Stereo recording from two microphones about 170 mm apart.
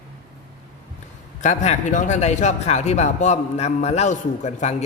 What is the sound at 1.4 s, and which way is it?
Speech, 45° left (ahead or behind).